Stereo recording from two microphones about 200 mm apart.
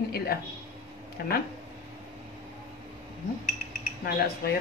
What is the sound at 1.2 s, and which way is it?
Speech, 50° left (ahead or behind).